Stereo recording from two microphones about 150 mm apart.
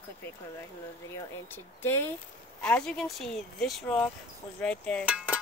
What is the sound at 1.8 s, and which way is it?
A woman's voice, 15° left (ahead or behind).